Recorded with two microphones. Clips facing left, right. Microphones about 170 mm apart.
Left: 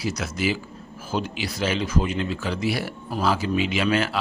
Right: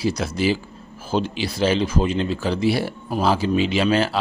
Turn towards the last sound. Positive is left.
turn(degrees=-30)  # may be behind; listen again after turning